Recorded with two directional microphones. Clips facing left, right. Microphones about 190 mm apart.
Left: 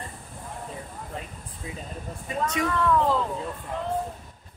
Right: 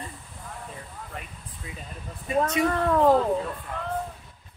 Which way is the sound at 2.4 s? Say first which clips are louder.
Left 1 dB; 45° right (ahead or behind).